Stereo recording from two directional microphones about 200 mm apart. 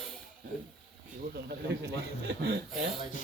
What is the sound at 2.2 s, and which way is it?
Speech, 55° right (ahead or behind).